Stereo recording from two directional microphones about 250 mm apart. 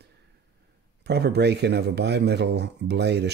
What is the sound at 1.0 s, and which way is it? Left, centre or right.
Speech, right.